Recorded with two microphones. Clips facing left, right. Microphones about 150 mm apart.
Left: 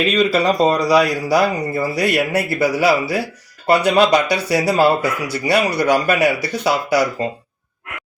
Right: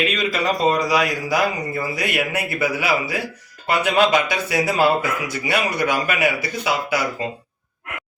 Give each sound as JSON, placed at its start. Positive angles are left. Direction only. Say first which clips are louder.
{"t": 0.0, "sound": "speech", "louder": "left 6 dB", "side_deg": 35}